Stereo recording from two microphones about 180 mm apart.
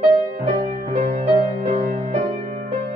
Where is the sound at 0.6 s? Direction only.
35° right (ahead or behind).